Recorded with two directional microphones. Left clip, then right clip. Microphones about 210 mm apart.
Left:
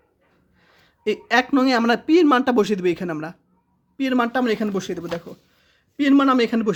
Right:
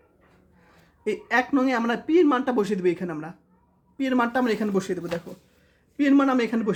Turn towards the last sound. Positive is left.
turn(degrees=30)  # may be behind; listen again after turning